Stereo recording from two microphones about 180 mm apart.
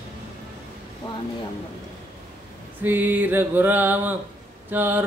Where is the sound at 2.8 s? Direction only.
10° right (ahead or behind).